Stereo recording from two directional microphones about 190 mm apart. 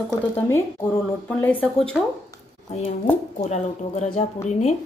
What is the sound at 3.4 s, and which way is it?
A woman's voice, 35° left (ahead or behind).